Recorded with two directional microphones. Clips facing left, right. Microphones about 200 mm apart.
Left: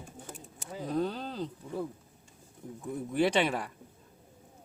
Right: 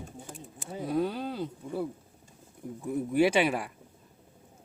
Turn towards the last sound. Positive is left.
turn(degrees=-10)  # may be behind; listen again after turning